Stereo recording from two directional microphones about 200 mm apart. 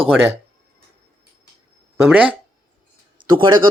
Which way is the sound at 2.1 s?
5° right (ahead or behind).